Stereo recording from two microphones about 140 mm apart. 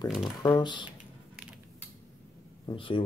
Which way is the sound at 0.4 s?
30° left (ahead or behind).